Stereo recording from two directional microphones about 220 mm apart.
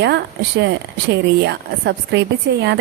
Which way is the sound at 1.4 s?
50° right (ahead or behind).